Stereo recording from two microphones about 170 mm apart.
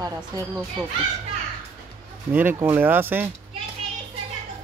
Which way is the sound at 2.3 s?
15° right (ahead or behind).